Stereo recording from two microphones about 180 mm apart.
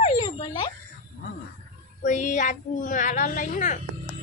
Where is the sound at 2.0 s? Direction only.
45° left (ahead or behind).